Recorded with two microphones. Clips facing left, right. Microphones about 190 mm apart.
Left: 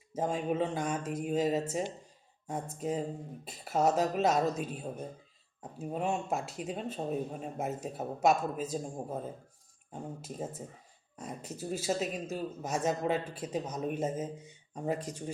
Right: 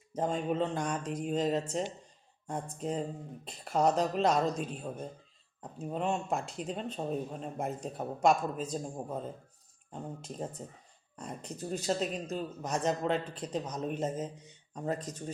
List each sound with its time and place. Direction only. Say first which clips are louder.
0.1 s speech: even; 5° left (ahead or behind)
2.7 s speech: left 1 dB; 5° left (ahead or behind)
9.9 s speech: even; 5° left (ahead or behind)